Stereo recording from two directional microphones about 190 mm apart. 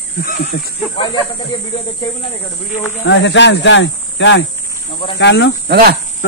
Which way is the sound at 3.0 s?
70° left (ahead or behind).